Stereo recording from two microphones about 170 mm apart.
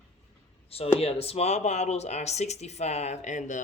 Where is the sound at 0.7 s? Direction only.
35° left (ahead or behind).